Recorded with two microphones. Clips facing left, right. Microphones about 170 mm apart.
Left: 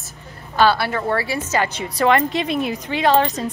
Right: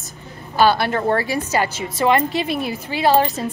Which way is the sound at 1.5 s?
5° right (ahead or behind).